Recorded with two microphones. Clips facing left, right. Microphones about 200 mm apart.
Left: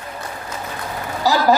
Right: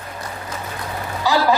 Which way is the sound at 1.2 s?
40° left (ahead or behind).